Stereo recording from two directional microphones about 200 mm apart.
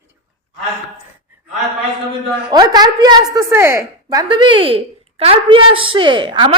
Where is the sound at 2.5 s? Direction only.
20° right (ahead or behind).